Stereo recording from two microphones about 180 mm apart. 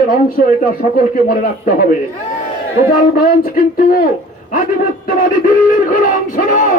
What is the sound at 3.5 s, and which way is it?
Speech, 50° left (ahead or behind).